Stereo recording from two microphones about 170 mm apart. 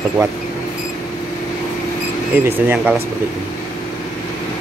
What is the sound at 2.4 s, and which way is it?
Speech, 10° right (ahead or behind).